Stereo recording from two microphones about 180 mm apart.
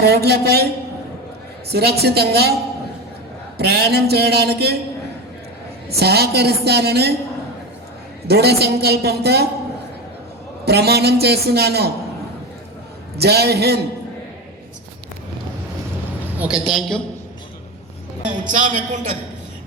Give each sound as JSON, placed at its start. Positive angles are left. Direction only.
{"t": 0.0, "sound": "a woman's voice", "side_deg": -65}
{"t": 1.7, "sound": "a woman's voice", "side_deg": -65}
{"t": 3.6, "sound": "a woman's voice", "side_deg": -65}
{"t": 5.9, "sound": "a woman's voice", "side_deg": -60}
{"t": 8.3, "sound": "a woman's voice", "side_deg": -65}
{"t": 10.7, "sound": "a woman's voice", "side_deg": -65}
{"t": 13.1, "sound": "a woman's voice", "side_deg": -65}
{"t": 16.4, "sound": "a woman's voice", "side_deg": -5}
{"t": 18.5, "sound": "a woman's voice", "side_deg": -45}